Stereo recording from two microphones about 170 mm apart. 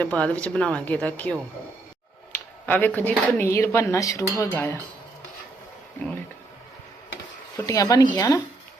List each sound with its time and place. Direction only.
0.0 s speech: 5° left (ahead or behind)
2.6 s speech: 10° left (ahead or behind)
7.5 s speech: 20° left (ahead or behind)